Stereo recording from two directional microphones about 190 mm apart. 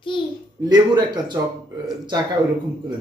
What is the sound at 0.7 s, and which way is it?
Speech, 20° right (ahead or behind).